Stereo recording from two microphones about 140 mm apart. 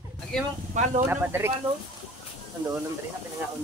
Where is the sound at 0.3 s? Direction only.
5° left (ahead or behind).